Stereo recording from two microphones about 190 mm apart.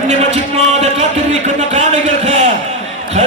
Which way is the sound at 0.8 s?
35° right (ahead or behind).